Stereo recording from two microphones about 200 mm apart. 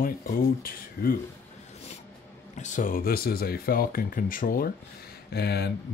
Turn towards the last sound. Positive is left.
turn(degrees=55)  # may be behind; listen again after turning